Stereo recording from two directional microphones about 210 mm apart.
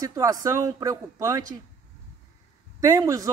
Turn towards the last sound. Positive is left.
turn(degrees=-15)  # may be behind; listen again after turning